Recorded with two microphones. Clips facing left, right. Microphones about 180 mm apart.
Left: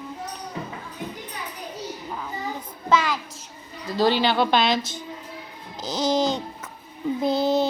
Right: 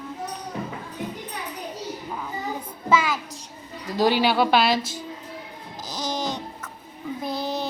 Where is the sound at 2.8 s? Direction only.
5° right (ahead or behind).